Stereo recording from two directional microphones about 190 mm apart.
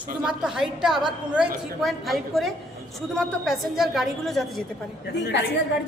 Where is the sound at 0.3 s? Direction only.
5° right (ahead or behind).